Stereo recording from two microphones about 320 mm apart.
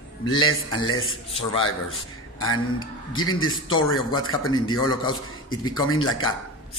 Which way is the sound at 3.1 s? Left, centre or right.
Left.